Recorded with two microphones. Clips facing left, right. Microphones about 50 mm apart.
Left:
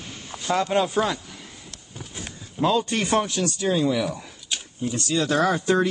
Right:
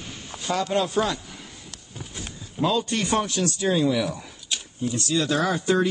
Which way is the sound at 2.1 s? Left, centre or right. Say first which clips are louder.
Even; centre.